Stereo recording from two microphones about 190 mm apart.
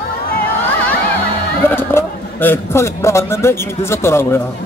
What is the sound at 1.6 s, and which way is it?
A man's voice, 10° left (ahead or behind).